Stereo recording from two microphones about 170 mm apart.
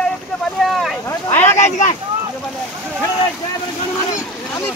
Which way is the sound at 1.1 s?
10° left (ahead or behind).